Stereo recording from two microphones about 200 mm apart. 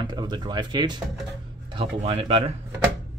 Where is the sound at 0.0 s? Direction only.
20° right (ahead or behind).